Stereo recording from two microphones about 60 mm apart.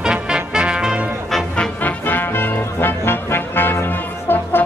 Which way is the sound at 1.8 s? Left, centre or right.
Left.